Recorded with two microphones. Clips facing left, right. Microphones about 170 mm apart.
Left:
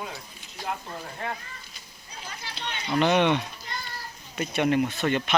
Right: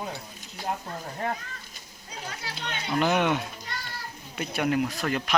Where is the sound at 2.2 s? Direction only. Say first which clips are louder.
Right 1 dB; 75° right (ahead or behind).